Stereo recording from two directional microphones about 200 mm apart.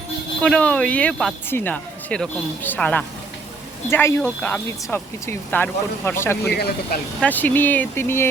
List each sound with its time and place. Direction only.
0.4 s speech: 5° left (ahead or behind)
6.5 s speech: 50° left (ahead or behind)
7.2 s speech: 10° left (ahead or behind)